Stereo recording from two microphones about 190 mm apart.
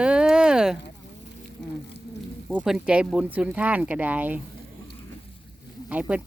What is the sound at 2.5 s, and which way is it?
Speech, 5° right (ahead or behind).